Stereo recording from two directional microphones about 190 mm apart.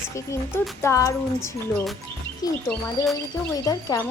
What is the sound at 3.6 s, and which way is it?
Speech, 15° left (ahead or behind).